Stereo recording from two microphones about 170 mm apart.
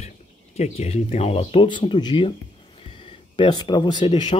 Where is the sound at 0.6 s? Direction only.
40° left (ahead or behind).